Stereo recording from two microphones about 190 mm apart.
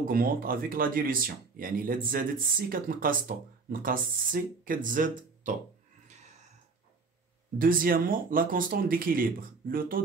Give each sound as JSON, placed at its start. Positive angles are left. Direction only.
{"t": 0.1, "sound": "speech", "side_deg": -50}
{"t": 6.0, "sound": "a sound", "side_deg": -35}
{"t": 7.5, "sound": "speech", "side_deg": -50}